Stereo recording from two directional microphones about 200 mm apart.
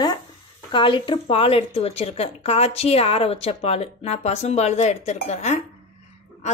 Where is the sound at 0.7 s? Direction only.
25° left (ahead or behind).